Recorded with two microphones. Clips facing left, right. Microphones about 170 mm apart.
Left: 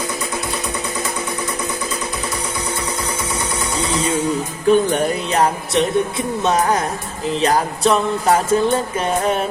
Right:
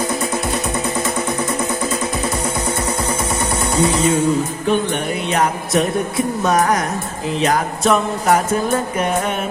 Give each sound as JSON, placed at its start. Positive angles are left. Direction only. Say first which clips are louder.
{"t": 4.7, "sound": "speech", "louder": "left 5 dB", "side_deg": 40}
{"t": 7.4, "sound": "music", "louder": "even", "side_deg": 30}